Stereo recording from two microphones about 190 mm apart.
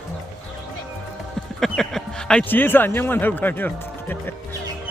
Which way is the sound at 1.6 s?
Centre (ahead or behind).